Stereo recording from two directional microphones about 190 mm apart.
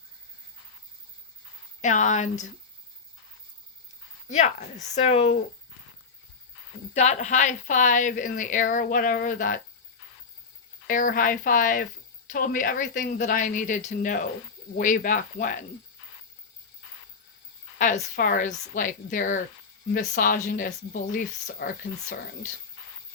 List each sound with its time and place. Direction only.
1.8 s a woman's voice: 40° left (ahead or behind)
4.3 s a woman's voice: 40° left (ahead or behind)
6.9 s a woman's voice: 35° left (ahead or behind)
10.8 s a woman's voice: 45° left (ahead or behind)
17.7 s a woman's voice: 40° left (ahead or behind)